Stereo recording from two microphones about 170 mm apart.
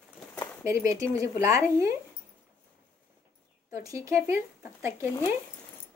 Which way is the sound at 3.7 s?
20° right (ahead or behind).